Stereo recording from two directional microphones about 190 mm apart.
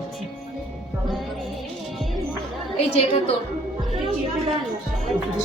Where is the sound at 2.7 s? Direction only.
30° left (ahead or behind).